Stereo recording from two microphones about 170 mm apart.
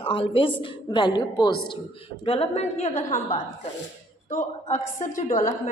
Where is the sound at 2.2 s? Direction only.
35° left (ahead or behind).